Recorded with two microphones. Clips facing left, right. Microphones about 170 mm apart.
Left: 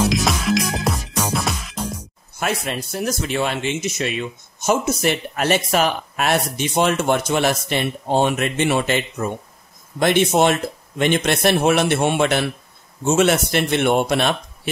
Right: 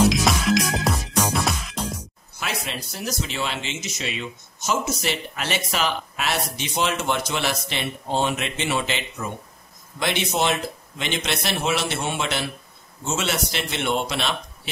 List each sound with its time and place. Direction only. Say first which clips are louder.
0.1 s music: left 1 dB; centre (ahead or behind)
2.4 s speech: left 7 dB; 50° left (ahead or behind)